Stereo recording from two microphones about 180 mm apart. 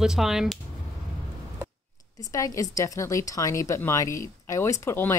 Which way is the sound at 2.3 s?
20° left (ahead or behind).